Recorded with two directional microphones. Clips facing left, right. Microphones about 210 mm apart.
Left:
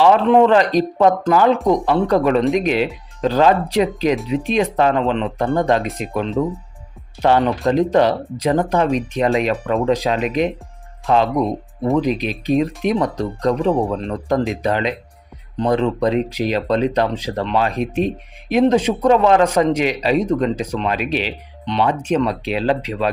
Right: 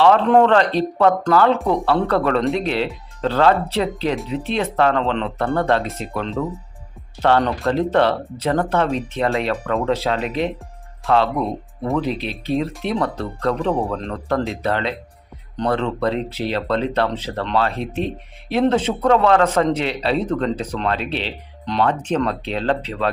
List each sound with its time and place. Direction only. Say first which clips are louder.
0.3 s speech: left 2 dB; centre (ahead or behind)
0.5 s speech: left 2 dB; 10° left (ahead or behind)
21.6 s speech: left 1 dB; centre (ahead or behind)